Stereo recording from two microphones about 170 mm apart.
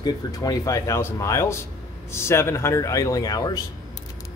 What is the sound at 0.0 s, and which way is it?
Speech, 25° left (ahead or behind).